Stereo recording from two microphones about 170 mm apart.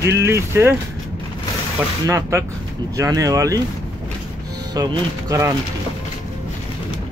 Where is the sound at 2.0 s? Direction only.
15° right (ahead or behind).